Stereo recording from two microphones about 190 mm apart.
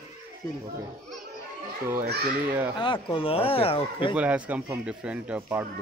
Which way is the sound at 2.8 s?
25° left (ahead or behind).